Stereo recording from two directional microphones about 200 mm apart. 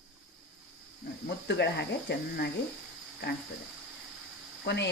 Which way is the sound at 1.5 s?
55° left (ahead or behind).